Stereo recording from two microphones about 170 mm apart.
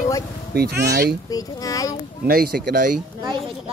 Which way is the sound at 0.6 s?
70° right (ahead or behind).